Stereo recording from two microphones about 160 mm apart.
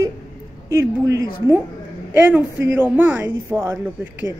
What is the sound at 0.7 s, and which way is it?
Speech, 20° right (ahead or behind).